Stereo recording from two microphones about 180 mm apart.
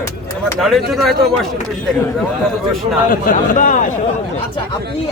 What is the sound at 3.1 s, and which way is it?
Speech, 50° left (ahead or behind).